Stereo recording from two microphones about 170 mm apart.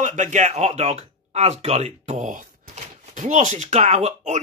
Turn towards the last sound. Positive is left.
turn(degrees=-45)  # may be behind; listen again after turning